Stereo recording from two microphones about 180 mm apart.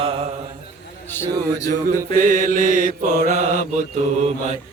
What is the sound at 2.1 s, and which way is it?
Mantra, 45° right (ahead or behind).